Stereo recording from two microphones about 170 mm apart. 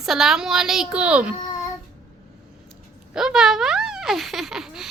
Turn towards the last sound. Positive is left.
turn(degrees=-5)  # may be behind; listen again after turning